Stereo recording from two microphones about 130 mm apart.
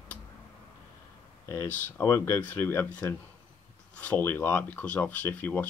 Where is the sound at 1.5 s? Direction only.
15° left (ahead or behind).